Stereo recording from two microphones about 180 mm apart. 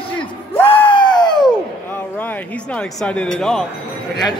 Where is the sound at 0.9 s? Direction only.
25° left (ahead or behind).